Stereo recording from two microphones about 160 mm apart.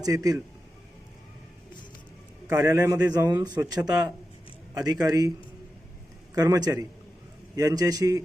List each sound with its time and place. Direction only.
0.0 s a man's voice: 20° right (ahead or behind)
2.5 s a man's voice: 20° right (ahead or behind)
6.3 s a man's voice: 25° right (ahead or behind)